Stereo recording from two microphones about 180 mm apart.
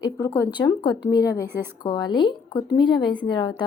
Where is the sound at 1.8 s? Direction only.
25° left (ahead or behind).